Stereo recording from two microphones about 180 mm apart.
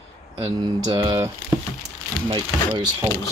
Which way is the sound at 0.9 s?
20° right (ahead or behind).